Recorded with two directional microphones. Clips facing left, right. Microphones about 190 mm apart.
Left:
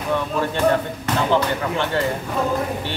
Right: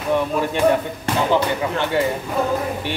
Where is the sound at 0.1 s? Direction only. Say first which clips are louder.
Right 3 dB; 15° right (ahead or behind).